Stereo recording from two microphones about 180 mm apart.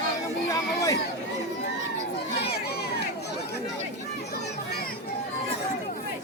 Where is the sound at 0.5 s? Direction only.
20° left (ahead or behind).